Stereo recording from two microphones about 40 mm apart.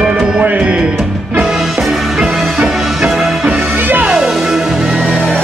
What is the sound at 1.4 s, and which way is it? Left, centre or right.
Music, centre.